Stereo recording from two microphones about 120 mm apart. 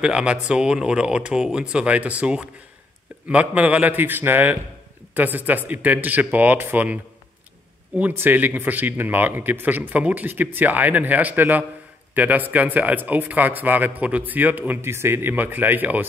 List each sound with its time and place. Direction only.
0.0 s speech: 5° right (ahead or behind)